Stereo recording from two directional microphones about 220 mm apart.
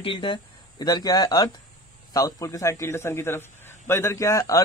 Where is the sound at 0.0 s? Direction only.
25° left (ahead or behind).